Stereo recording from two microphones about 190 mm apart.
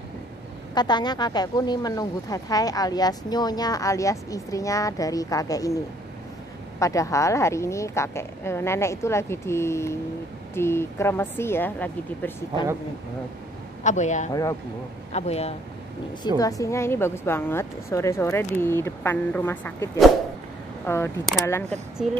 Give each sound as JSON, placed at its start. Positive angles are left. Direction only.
{"t": 0.7, "sound": "speech", "side_deg": 20}
{"t": 6.8, "sound": "a woman's voice", "side_deg": 15}
{"t": 13.8, "sound": "a man's voice", "side_deg": 40}
{"t": 16.3, "sound": "a woman's voice", "side_deg": 20}